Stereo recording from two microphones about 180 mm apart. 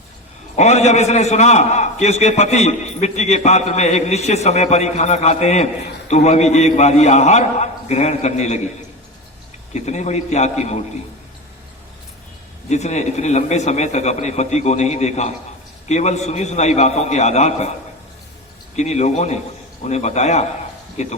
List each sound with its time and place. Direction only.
0.5 s a man's voice: 40° left (ahead or behind)
9.7 s a man's voice: 40° left (ahead or behind)
12.6 s a man's voice: 40° left (ahead or behind)
18.8 s a man's voice: 40° left (ahead or behind)